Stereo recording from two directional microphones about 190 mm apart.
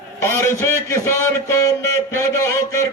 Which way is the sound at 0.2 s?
15° left (ahead or behind).